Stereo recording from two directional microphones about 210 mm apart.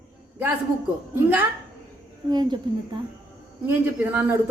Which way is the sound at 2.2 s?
20° right (ahead or behind).